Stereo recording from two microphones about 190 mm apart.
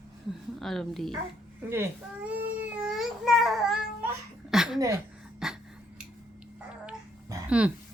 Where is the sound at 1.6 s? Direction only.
10° right (ahead or behind).